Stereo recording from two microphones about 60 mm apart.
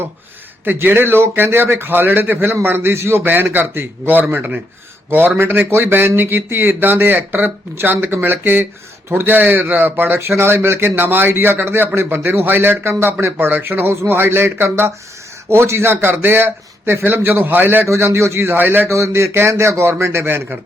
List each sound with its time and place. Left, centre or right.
0.6 s speech: right
10.2 s speech: right
17.8 s a man's voice: right
18.9 s a man's voice: right